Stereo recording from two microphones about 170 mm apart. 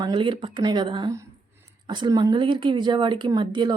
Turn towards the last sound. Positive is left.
turn(degrees=-25)  # may be behind; listen again after turning